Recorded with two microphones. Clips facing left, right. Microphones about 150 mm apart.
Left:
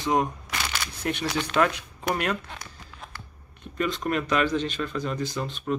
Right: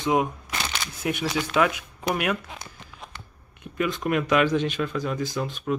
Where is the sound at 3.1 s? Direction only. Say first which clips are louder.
Even; 10° right (ahead or behind).